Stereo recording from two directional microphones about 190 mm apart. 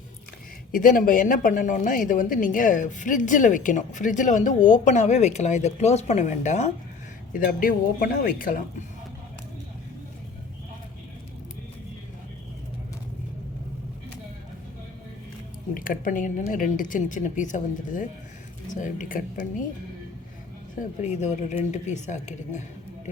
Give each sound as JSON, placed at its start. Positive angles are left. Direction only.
{"t": 0.7, "sound": "a woman's voice", "side_deg": 45}
{"t": 15.7, "sound": "a woman's voice", "side_deg": 45}
{"t": 20.7, "sound": "a woman's voice", "side_deg": 40}